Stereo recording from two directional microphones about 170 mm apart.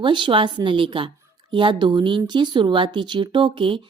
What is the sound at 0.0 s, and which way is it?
A woman's voice, 30° right (ahead or behind).